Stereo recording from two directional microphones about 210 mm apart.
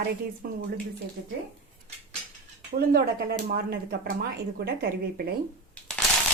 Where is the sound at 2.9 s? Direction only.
45° right (ahead or behind).